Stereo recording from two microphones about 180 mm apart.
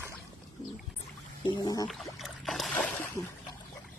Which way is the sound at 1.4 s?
25° left (ahead or behind).